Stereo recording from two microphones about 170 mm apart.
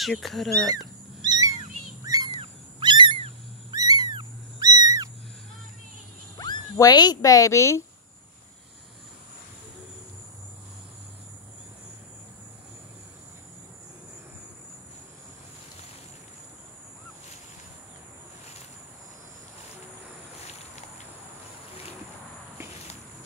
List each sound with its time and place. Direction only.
0.0 s speech: centre (ahead or behind)
0.7 s a sound: 25° right (ahead or behind)
2.0 s bird: 20° right (ahead or behind)
2.8 s cat: 30° right (ahead or behind)
3.7 s a sound: 20° right (ahead or behind)
6.3 s speech: 25° left (ahead or behind)